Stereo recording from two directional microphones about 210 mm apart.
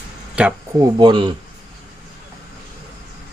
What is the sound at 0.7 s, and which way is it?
Speech, 20° right (ahead or behind).